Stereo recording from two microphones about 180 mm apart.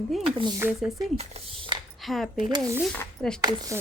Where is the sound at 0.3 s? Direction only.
30° right (ahead or behind).